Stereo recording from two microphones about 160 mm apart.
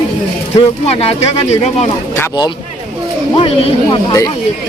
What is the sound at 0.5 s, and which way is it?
Speech, 40° left (ahead or behind).